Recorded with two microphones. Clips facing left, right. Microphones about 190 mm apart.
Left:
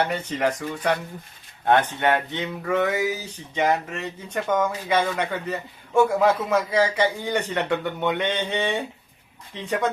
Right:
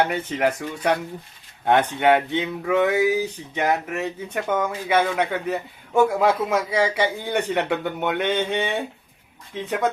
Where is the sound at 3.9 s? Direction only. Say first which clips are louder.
Right 3 dB; 10° right (ahead or behind).